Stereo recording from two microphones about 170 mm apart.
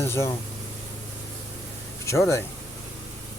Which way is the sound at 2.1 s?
15° left (ahead or behind).